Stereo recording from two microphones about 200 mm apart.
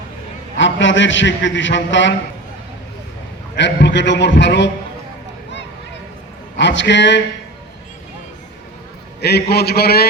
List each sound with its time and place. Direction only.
0.6 s a man's voice: 65° left (ahead or behind)
3.6 s a man's voice: 60° left (ahead or behind)
6.6 s a man's voice: 60° left (ahead or behind)
9.2 s a man's voice: 55° left (ahead or behind)